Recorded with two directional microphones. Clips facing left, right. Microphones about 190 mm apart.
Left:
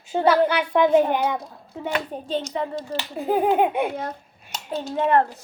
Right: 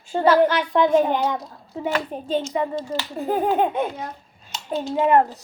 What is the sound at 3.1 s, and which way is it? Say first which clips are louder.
Speech: left 1 dB; 10° left (ahead or behind).